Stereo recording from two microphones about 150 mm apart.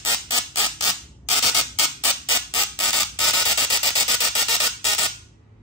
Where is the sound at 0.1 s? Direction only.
25° left (ahead or behind).